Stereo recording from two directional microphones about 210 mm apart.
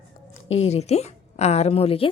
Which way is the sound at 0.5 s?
30° left (ahead or behind).